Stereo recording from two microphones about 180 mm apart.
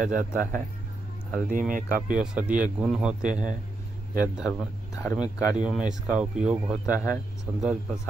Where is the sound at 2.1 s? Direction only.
10° right (ahead or behind).